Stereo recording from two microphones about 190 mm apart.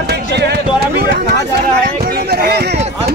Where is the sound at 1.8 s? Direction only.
55° right (ahead or behind).